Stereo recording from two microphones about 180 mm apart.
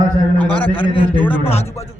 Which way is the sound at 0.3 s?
10° left (ahead or behind).